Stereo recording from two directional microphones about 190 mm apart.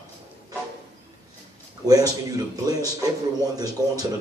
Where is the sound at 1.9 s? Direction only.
20° right (ahead or behind).